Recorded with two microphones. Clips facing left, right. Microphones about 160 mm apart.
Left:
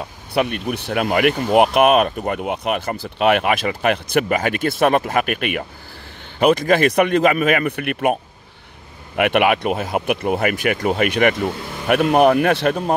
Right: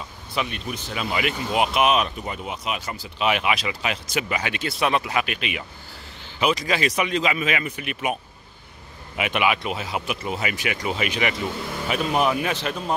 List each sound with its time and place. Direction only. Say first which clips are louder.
0.0 s speech: left 8 dB; 55° left (ahead or behind)